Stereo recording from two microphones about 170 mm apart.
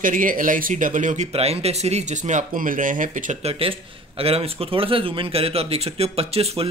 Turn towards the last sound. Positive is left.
turn(degrees=-35)  # may be behind; listen again after turning